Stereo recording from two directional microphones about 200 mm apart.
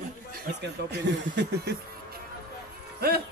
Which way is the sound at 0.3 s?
60° right (ahead or behind).